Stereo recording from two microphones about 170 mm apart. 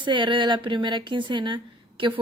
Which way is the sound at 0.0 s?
30° right (ahead or behind).